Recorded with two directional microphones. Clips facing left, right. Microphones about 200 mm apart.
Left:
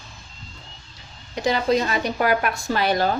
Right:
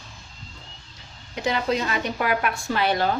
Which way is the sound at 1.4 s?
35° left (ahead or behind).